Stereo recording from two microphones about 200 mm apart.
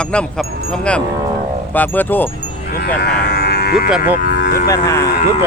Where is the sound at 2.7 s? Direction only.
50° left (ahead or behind).